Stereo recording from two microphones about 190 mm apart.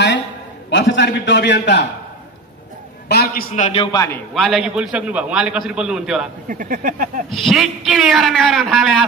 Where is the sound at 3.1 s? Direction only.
55° left (ahead or behind).